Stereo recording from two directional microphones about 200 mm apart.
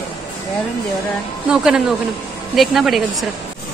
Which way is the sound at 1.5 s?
5° right (ahead or behind).